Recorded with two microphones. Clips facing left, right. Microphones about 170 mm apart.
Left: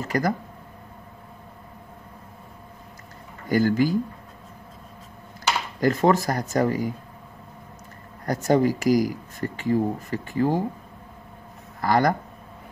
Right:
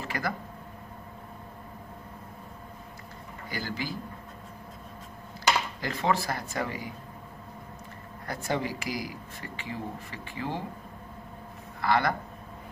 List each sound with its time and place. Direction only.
0.0 s a sound: 45° left (ahead or behind)
3.4 s speech: 45° left (ahead or behind)
5.8 s speech: 45° left (ahead or behind)
8.3 s speech: 45° left (ahead or behind)
11.8 s speech: 40° left (ahead or behind)